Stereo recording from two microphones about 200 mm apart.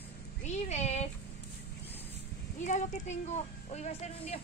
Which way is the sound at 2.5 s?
40° left (ahead or behind).